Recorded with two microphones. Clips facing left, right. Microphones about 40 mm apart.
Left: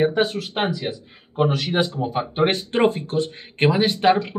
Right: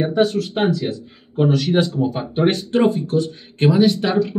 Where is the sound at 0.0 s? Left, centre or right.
Left.